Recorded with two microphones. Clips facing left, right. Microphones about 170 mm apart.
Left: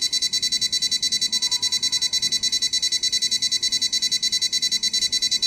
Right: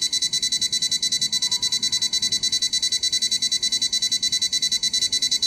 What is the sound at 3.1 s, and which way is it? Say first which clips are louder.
Music: right 1 dB; 90° left.